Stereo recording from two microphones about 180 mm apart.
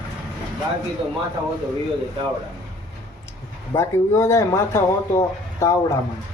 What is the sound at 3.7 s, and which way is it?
Speech, 15° left (ahead or behind).